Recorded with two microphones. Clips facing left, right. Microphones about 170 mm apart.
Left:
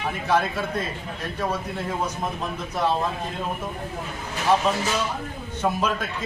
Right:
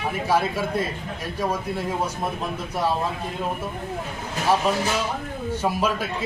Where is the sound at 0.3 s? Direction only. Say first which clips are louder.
Even; 10° right (ahead or behind).